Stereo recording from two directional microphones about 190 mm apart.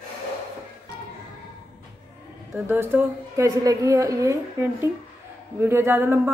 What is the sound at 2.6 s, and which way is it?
A woman's voice, 10° right (ahead or behind).